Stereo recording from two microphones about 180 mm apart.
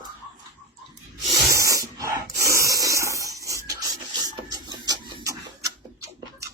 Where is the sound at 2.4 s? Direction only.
15° right (ahead or behind).